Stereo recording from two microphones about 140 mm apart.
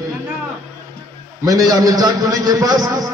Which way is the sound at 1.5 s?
25° right (ahead or behind).